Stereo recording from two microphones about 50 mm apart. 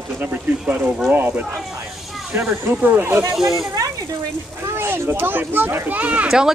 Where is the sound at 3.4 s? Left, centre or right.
Centre.